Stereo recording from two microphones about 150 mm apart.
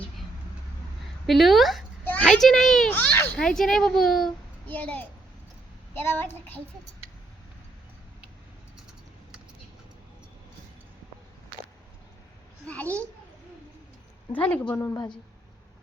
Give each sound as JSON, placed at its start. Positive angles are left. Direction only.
{"t": 1.3, "sound": "a child's voice", "side_deg": 0}
{"t": 12.6, "sound": "a child's voice", "side_deg": 10}
{"t": 14.3, "sound": "a child's voice", "side_deg": 10}